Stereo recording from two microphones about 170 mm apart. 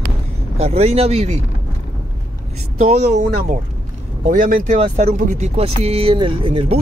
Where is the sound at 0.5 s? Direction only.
40° right (ahead or behind).